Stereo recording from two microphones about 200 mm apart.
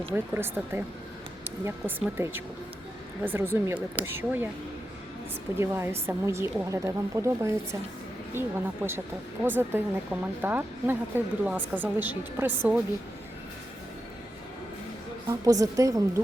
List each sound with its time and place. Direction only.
0.1 s speech: 10° right (ahead or behind)
5.5 s speech: 10° right (ahead or behind)
15.3 s speech: 15° right (ahead or behind)